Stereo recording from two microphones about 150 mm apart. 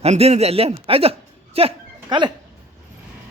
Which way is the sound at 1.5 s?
35° right (ahead or behind).